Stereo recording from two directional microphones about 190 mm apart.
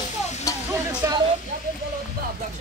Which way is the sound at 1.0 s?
15° right (ahead or behind).